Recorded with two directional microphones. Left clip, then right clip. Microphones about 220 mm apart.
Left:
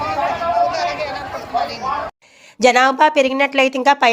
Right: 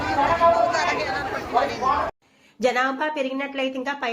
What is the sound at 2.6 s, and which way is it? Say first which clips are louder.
A woman's voice: left 10 dB; 50° left (ahead or behind).